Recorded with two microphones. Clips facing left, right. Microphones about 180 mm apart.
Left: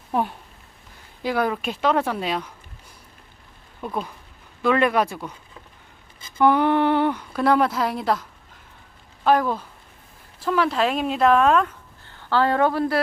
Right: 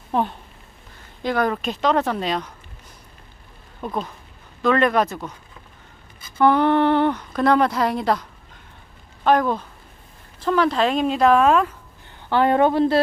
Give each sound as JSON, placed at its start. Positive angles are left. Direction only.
{"t": 0.1, "sound": "speech", "side_deg": 10}
{"t": 3.8, "sound": "speech", "side_deg": 5}
{"t": 6.4, "sound": "a woman's voice", "side_deg": 10}
{"t": 12.0, "sound": "a woman's voice", "side_deg": -20}